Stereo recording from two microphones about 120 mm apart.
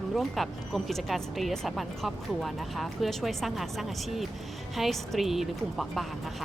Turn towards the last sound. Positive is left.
turn(degrees=0)  # may be behind; listen again after turning